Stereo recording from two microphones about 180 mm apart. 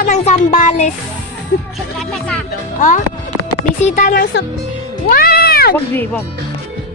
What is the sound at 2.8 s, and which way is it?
Music, 45° left (ahead or behind).